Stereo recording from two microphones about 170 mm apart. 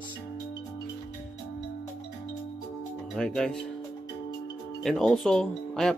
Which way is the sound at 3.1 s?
5° left (ahead or behind).